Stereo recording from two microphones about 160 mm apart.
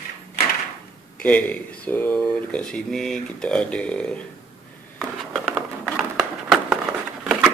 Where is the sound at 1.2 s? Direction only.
10° left (ahead or behind).